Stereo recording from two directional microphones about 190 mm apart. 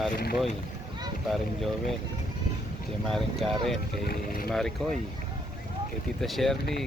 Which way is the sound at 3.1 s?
Centre (ahead or behind).